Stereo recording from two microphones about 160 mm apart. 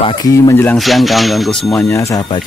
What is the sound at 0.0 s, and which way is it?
Speech, 20° left (ahead or behind).